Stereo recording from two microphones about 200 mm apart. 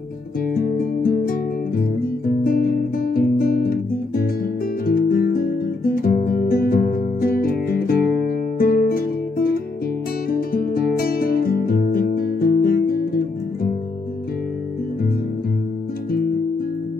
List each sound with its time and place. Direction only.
0.6 s music: 45° left (ahead or behind)
4.8 s guitar: 45° left (ahead or behind)
8.5 s music: 50° left (ahead or behind)